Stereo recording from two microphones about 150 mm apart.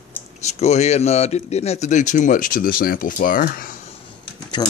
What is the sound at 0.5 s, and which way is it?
Speech, 45° left (ahead or behind).